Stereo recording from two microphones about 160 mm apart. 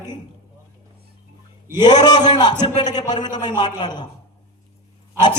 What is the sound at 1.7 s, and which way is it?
A man's voice, 25° left (ahead or behind).